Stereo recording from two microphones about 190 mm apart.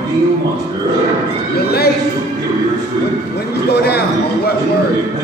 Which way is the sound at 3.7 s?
55° left (ahead or behind).